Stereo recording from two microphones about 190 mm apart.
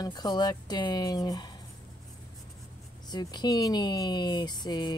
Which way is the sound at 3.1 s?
20° left (ahead or behind).